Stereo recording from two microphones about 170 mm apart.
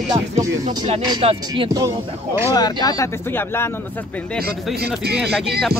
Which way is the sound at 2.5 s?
25° left (ahead or behind).